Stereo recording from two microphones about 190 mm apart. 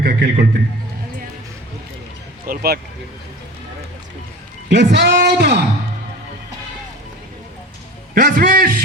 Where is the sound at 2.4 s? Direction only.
50° right (ahead or behind).